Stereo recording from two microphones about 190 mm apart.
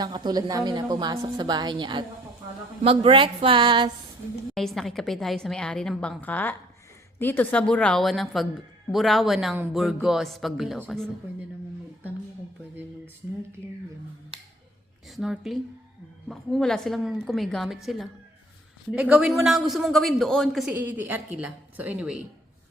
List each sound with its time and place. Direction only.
0.0 s a woman's voice: 20° right (ahead or behind)
4.5 s a man's voice: centre (ahead or behind)
15.0 s a woman's voice: centre (ahead or behind)